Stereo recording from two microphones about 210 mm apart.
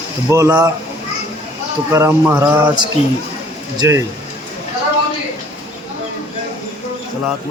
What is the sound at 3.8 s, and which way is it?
Speech, 15° right (ahead or behind).